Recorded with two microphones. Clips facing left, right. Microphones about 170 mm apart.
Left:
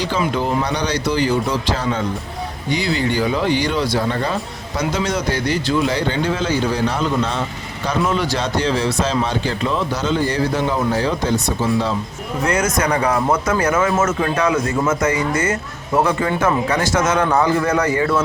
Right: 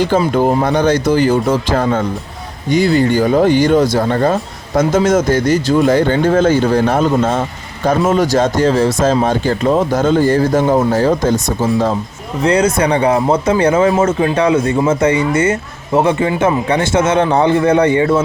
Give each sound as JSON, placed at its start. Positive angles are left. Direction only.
{"t": 0.3, "sound": "speech", "side_deg": -50}
{"t": 12.5, "sound": "a man's voice", "side_deg": -30}